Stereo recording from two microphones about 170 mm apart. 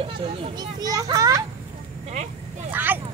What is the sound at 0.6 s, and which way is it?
Speech, 20° right (ahead or behind).